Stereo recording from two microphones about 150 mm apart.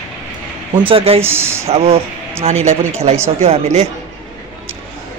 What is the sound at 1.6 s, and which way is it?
Speech, 40° right (ahead or behind).